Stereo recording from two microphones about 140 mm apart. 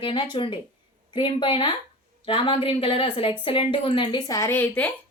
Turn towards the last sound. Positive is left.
turn(degrees=10)  # may be behind; listen again after turning